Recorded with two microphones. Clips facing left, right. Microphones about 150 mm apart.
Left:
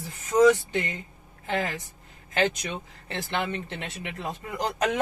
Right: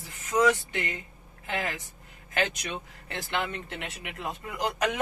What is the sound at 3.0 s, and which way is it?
Speech, 30° left (ahead or behind).